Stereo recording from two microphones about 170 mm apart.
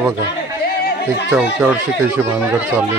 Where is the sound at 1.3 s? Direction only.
10° right (ahead or behind).